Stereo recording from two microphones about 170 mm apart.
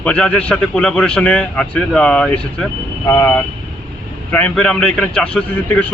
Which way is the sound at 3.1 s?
15° left (ahead or behind).